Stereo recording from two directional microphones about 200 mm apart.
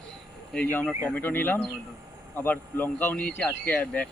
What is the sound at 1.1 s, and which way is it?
Speech, 10° left (ahead or behind).